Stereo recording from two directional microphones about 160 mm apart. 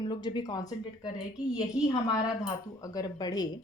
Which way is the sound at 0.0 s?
25° left (ahead or behind).